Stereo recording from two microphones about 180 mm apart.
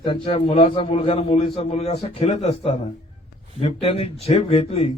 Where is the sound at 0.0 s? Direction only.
30° left (ahead or behind).